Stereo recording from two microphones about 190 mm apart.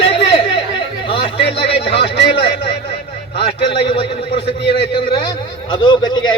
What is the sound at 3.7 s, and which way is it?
A man's voice, 25° left (ahead or behind).